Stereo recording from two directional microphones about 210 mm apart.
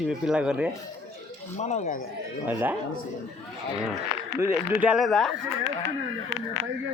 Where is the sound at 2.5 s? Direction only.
10° right (ahead or behind).